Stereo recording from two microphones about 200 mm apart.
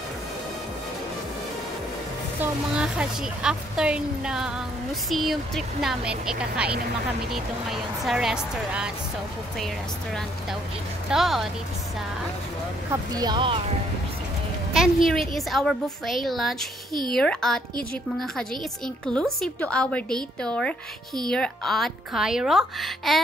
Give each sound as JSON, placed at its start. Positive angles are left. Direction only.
{"t": 2.4, "sound": "a woman's voice", "side_deg": -5}
{"t": 11.1, "sound": "a woman's voice", "side_deg": 0}
{"t": 13.1, "sound": "speech", "side_deg": -20}
{"t": 14.7, "sound": "a woman's voice", "side_deg": 0}